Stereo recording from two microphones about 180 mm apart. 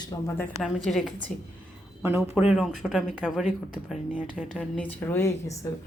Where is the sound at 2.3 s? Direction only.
5° right (ahead or behind); by 5.7 s 15° left (ahead or behind).